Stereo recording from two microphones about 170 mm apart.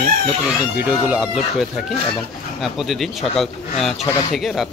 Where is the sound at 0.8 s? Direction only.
10° right (ahead or behind).